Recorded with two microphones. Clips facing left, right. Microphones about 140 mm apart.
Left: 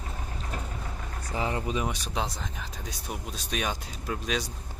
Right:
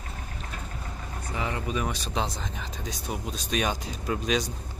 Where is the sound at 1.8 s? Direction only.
10° left (ahead or behind).